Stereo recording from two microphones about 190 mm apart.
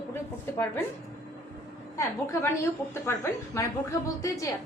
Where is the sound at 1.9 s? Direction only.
15° left (ahead or behind).